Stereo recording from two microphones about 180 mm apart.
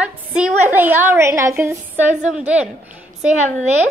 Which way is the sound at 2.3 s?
5° right (ahead or behind).